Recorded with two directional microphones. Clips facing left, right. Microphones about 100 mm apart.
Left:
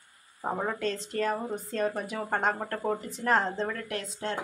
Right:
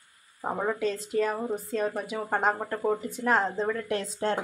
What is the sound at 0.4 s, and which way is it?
A woman's voice, 5° right (ahead or behind).